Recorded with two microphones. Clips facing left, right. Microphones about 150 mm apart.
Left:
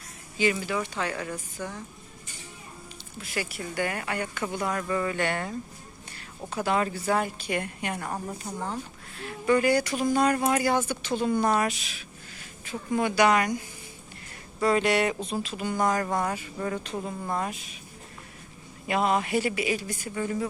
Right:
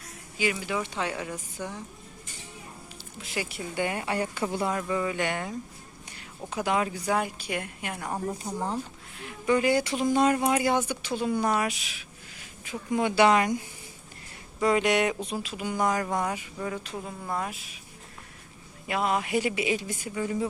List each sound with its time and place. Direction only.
0.3 s speech: 10° right (ahead or behind)
3.2 s speech: 15° right (ahead or behind)
4.7 s speech: 10° right (ahead or behind)
14.6 s speech: 15° right (ahead or behind)
18.9 s speech: centre (ahead or behind)